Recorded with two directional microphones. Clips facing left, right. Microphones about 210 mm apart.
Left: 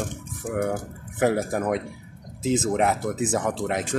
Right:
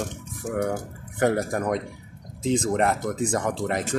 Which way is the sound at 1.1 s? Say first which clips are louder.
Even; centre (ahead or behind).